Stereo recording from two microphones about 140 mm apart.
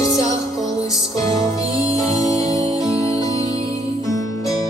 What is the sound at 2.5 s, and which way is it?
Music, 25° left (ahead or behind).